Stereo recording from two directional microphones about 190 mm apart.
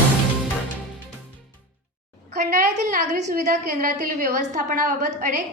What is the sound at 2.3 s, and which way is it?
A woman's voice, 40° right (ahead or behind).